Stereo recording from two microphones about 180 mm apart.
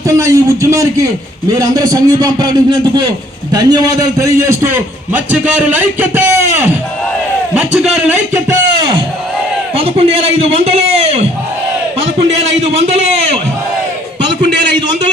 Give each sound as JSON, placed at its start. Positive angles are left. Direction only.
{"t": 0.2, "sound": "a man's voice", "side_deg": -15}
{"t": 5.1, "sound": "a man's voice", "side_deg": -10}
{"t": 7.8, "sound": "speech", "side_deg": -5}
{"t": 8.3, "sound": "a sound", "side_deg": -20}
{"t": 9.7, "sound": "a man's voice", "side_deg": -35}